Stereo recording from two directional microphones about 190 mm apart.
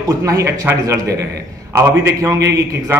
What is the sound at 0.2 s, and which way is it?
A man's voice, 15° right (ahead or behind).